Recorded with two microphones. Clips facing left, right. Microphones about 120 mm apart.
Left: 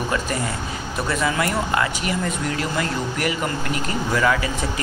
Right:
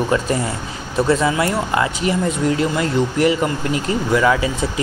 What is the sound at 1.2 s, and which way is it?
Speech, 20° right (ahead or behind).